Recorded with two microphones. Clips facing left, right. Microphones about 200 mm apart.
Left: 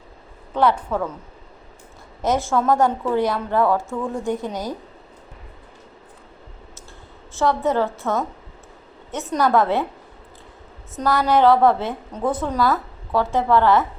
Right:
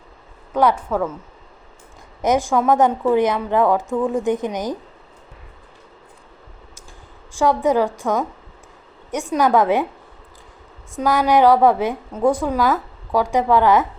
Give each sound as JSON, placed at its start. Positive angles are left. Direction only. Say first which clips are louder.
{"t": 0.5, "sound": "a woman's voice", "louder": "right 2 dB", "side_deg": -10}
{"t": 2.2, "sound": "a woman's voice", "louder": "right 2 dB", "side_deg": -15}
{"t": 7.3, "sound": "a woman's voice", "louder": "right 3 dB", "side_deg": -15}
{"t": 10.9, "sound": "a woman's voice", "louder": "right 2 dB", "side_deg": -15}